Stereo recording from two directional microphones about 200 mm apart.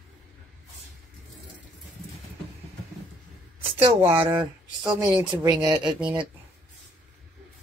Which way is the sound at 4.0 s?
10° right (ahead or behind).